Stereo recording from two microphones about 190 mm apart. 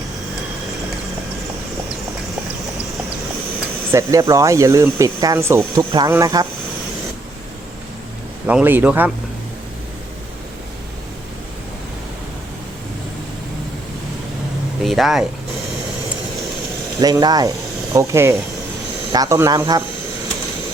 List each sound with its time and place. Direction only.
3.9 s speech: 15° right (ahead or behind)
8.4 s speech: 10° right (ahead or behind)
14.8 s speech: centre (ahead or behind)
17.0 s speech: 20° right (ahead or behind)